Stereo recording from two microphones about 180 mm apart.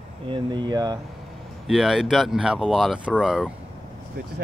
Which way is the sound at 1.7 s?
Centre (ahead or behind).